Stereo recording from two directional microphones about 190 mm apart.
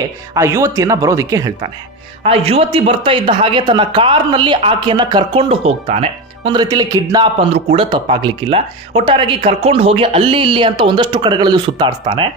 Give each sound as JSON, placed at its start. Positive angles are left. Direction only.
{"t": 0.3, "sound": "speech", "side_deg": -15}
{"t": 2.2, "sound": "speech", "side_deg": -30}